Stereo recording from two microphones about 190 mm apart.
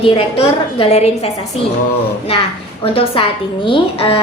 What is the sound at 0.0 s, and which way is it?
A woman's voice, 30° left (ahead or behind).